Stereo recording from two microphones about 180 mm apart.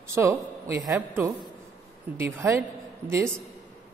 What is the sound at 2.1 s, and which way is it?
A man's voice, 15° right (ahead or behind).